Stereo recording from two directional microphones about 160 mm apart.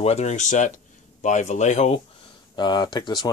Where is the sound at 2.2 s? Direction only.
25° left (ahead or behind).